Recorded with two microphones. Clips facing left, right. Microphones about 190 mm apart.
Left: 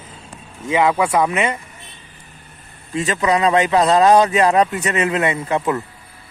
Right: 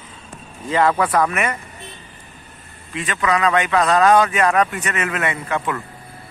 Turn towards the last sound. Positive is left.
turn(degrees=25)  # may be behind; listen again after turning